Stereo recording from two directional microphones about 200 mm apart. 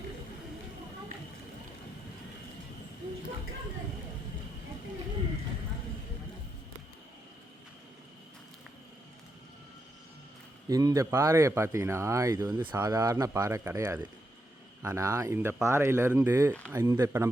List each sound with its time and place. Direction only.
10.7 s speech: 15° right (ahead or behind)